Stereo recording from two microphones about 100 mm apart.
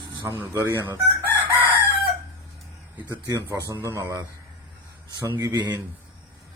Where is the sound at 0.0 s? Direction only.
50° right (ahead or behind).